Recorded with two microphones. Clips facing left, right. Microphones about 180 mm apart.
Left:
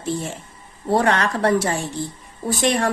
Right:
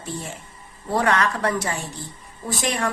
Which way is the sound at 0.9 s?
30° left (ahead or behind).